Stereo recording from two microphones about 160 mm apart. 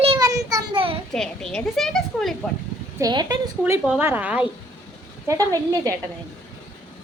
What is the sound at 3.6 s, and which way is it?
Speech, 15° right (ahead or behind).